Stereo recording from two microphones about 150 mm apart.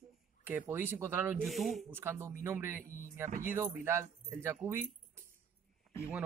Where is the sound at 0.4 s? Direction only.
15° right (ahead or behind).